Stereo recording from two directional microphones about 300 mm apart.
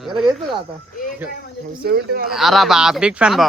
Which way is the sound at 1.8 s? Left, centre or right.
Right.